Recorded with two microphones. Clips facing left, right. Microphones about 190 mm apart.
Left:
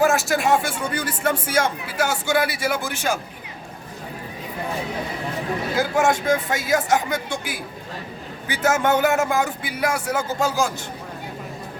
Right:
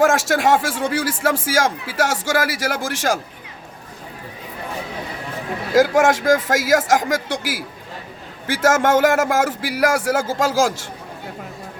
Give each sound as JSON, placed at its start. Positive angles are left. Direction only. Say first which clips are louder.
{"t": 0.0, "sound": "a man's voice", "louder": "right 3 dB", "side_deg": -90}
{"t": 5.7, "sound": "a man's voice", "louder": "right 6 dB", "side_deg": -90}